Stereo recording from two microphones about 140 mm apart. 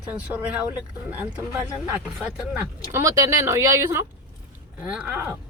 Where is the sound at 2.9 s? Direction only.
25° right (ahead or behind).